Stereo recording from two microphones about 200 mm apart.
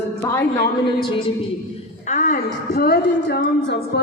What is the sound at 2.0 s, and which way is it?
A woman's voice, 40° left (ahead or behind).